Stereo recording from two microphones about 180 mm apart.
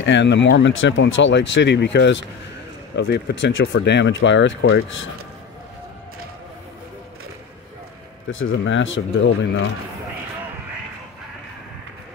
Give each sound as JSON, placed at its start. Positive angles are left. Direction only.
{"t": 0.0, "sound": "speech", "side_deg": 80}
{"t": 8.3, "sound": "speech", "side_deg": 90}